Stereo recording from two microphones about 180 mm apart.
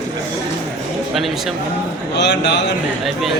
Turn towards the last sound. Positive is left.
turn(degrees=70)  # may be behind; listen again after turning